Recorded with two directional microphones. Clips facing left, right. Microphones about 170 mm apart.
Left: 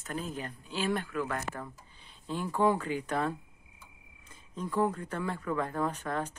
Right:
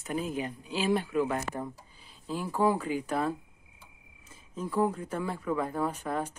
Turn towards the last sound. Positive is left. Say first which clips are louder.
# right 1 dB
turn(degrees=-10)  # may be behind; listen again after turning